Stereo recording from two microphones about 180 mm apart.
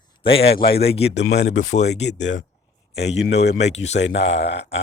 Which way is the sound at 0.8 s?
35° left (ahead or behind).